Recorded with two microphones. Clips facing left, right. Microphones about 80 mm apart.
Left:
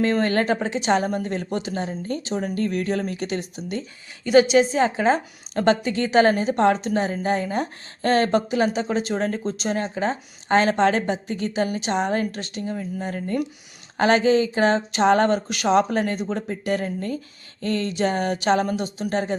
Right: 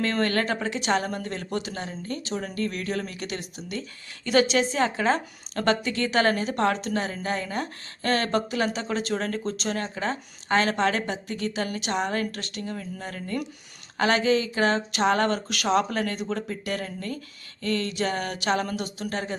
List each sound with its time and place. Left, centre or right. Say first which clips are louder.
0.0 s a woman's voice: left 4 dB; centre